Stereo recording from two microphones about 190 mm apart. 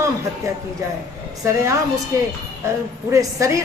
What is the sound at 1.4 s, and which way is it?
A woman's voice, 15° right (ahead or behind).